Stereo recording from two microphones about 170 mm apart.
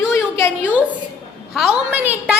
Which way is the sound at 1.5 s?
5° right (ahead or behind).